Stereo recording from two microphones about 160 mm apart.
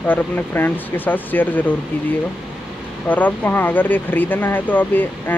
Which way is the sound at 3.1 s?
10° left (ahead or behind).